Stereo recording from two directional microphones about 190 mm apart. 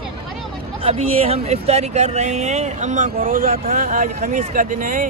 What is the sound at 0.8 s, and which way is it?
Speech, 30° right (ahead or behind).